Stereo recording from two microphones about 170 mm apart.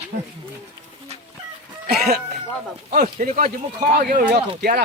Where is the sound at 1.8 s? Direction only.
65° right (ahead or behind).